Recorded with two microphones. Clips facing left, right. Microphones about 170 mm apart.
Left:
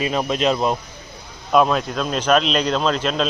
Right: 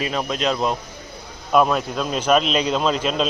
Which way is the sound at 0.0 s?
5° left (ahead or behind).